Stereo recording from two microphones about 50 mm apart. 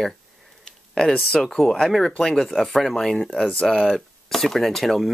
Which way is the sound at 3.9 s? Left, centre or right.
Centre.